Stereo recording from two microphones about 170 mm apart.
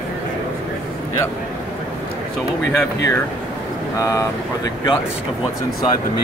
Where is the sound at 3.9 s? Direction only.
15° left (ahead or behind).